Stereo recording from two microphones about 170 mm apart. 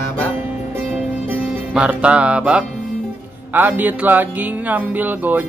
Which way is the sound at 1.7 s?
5° right (ahead or behind).